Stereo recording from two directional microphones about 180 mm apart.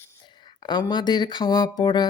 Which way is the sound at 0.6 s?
25° left (ahead or behind).